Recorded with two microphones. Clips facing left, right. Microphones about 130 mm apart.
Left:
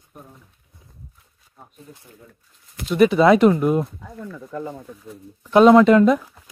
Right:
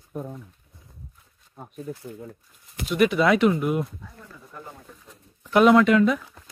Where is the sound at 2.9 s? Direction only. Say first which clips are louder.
Left 6 dB; 30° left (ahead or behind).